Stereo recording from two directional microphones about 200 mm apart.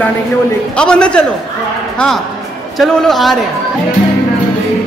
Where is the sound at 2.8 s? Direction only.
Centre (ahead or behind).